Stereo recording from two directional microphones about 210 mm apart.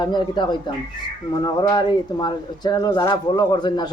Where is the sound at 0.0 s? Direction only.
20° left (ahead or behind).